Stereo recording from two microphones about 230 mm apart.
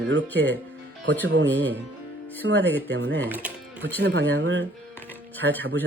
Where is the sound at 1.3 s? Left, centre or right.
Right.